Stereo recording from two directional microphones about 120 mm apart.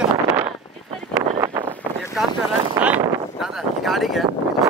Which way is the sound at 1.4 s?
20° right (ahead or behind).